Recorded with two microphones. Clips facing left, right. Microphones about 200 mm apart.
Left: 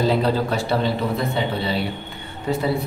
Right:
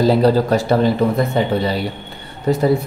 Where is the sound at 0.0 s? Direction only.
40° right (ahead or behind).